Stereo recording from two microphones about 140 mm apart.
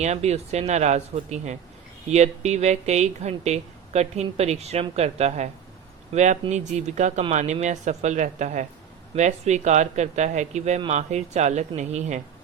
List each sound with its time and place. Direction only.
0.0 s speech: 50° right (ahead or behind)